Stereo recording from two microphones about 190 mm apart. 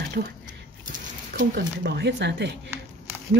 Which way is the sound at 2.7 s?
10° right (ahead or behind).